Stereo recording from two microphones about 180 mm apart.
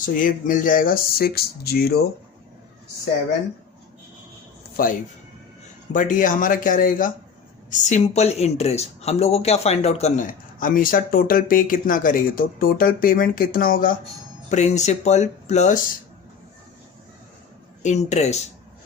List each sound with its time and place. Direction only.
0.0 s speech: 50° left (ahead or behind)
4.8 s speech: 55° left (ahead or behind)
14.5 s speech: 40° left (ahead or behind)
17.8 s speech: 40° left (ahead or behind)